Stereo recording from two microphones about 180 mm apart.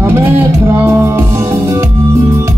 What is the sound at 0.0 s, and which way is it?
Music, 15° right (ahead or behind).